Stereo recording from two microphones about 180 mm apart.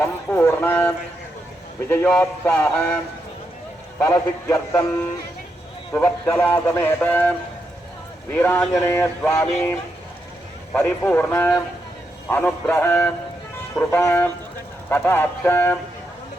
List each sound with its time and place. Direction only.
0.0 s speech: 10° left (ahead or behind)
4.1 s speech: 15° left (ahead or behind)
5.9 s speech: 10° left (ahead or behind)
10.8 s speech: 10° left (ahead or behind)